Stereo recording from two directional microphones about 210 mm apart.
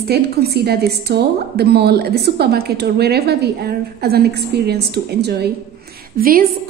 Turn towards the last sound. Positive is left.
turn(degrees=-45)  # may be behind; listen again after turning